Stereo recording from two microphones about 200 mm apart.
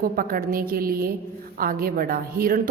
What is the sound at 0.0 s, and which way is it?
A woman's voice, 45° right (ahead or behind).